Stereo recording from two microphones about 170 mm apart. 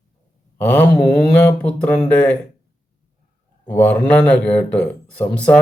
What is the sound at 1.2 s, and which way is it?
Speech, 5° left (ahead or behind).